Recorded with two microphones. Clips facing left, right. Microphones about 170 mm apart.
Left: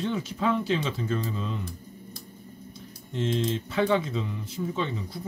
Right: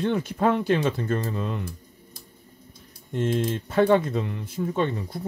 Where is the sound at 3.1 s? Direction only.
50° right (ahead or behind).